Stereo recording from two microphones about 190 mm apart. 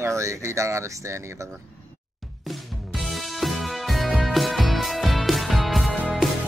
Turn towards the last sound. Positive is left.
turn(degrees=0)  # may be behind; listen again after turning